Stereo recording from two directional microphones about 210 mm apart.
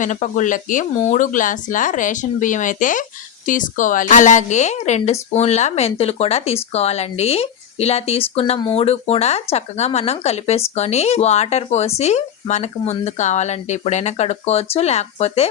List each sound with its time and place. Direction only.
0.0 s speech: 35° left (ahead or behind)